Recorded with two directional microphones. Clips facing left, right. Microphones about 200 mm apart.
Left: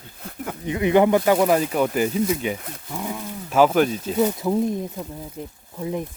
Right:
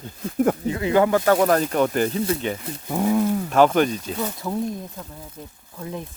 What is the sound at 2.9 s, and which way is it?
Speech, 55° right (ahead or behind).